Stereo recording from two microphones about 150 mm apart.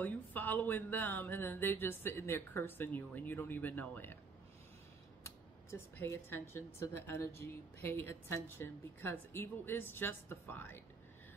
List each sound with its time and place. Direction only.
0.0 s speech: 10° left (ahead or behind)
5.2 s speech: 15° left (ahead or behind)